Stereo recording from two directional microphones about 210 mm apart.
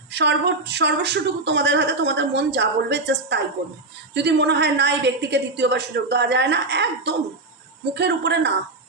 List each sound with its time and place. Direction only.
0.1 s a woman's voice: 55° right (ahead or behind)